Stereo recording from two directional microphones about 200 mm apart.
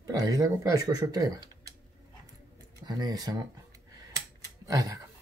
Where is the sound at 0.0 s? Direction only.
15° right (ahead or behind).